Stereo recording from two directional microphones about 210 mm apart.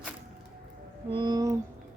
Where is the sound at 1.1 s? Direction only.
20° right (ahead or behind).